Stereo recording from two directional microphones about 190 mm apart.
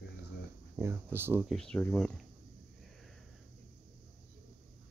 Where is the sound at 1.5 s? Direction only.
5° left (ahead or behind).